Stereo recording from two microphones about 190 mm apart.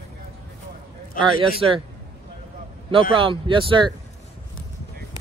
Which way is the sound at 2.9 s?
25° right (ahead or behind).